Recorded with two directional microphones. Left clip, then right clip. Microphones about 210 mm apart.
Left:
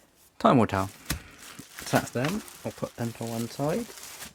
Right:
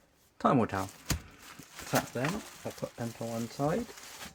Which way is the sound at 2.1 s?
55° left (ahead or behind).